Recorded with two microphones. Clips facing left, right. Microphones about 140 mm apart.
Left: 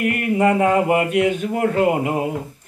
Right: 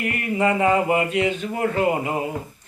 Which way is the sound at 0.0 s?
60° left (ahead or behind).